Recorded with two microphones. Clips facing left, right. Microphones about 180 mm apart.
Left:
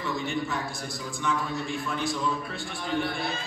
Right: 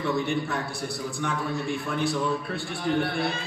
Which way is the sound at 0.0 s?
60° right (ahead or behind).